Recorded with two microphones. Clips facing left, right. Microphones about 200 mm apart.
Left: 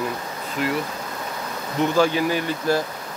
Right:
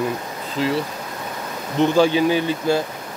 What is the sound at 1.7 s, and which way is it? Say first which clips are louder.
Speech: right 3 dB; 25° right (ahead or behind).